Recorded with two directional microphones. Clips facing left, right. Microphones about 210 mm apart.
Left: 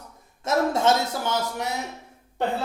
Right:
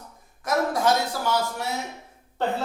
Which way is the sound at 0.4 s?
25° left (ahead or behind).